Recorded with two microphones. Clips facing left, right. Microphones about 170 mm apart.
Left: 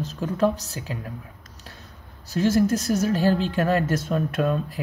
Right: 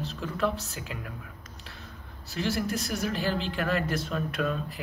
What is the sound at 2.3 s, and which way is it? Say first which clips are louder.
Speech: left 9 dB; 40° left (ahead or behind).